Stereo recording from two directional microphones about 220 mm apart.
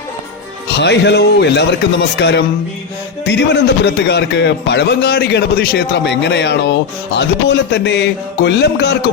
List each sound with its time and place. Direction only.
0.7 s a man's voice: 50° left (ahead or behind)